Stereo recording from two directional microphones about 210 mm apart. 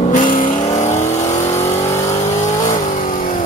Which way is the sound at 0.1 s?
40° left (ahead or behind).